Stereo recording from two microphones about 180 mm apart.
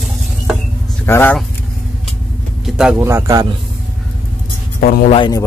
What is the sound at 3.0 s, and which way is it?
Speech, 15° right (ahead or behind).